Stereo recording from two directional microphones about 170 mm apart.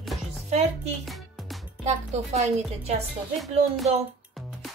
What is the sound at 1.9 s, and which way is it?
Speech, 40° right (ahead or behind).